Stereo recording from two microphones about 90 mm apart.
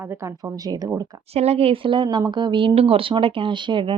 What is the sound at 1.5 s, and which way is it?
Speech, 90° right.